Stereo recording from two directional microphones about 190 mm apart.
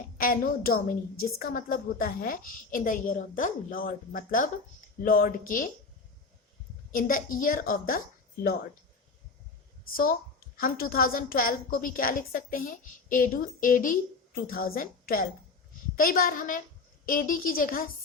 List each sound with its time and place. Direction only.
0.2 s a woman's voice: 50° left (ahead or behind)
6.9 s a woman's voice: 45° left (ahead or behind)
9.9 s a woman's voice: 50° left (ahead or behind)